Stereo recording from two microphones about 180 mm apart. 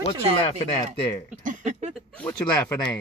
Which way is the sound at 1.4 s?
45° right (ahead or behind).